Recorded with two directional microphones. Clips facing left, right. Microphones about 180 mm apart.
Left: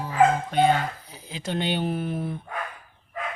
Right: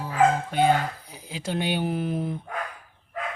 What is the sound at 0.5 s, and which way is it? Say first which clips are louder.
Speech: left 1 dB; 10° right (ahead or behind).